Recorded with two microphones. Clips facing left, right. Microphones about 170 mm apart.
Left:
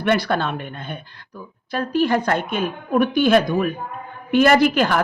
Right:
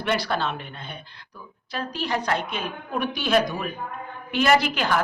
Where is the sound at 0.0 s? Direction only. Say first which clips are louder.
Left 5 dB; 55° left (ahead or behind).